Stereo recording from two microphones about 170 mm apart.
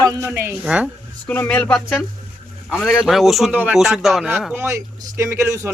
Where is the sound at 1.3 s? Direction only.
10° left (ahead or behind).